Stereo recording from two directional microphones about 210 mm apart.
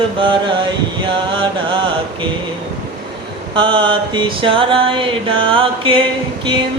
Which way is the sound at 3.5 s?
25° right (ahead or behind).